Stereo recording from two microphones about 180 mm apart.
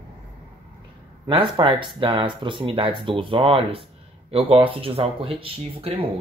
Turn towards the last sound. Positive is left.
turn(degrees=-30)  # may be behind; listen again after turning